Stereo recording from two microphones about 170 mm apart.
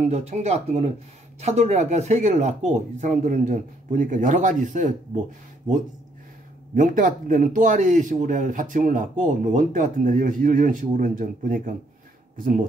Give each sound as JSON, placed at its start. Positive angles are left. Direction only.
{"t": 0.1, "sound": "a man's voice", "side_deg": -40}
{"t": 6.7, "sound": "a man's voice", "side_deg": -50}